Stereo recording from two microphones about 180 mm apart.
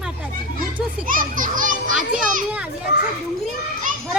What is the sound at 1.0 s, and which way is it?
Children playing, 50° right (ahead or behind).